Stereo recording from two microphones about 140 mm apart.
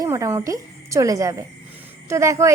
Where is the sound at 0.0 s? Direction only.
20° right (ahead or behind).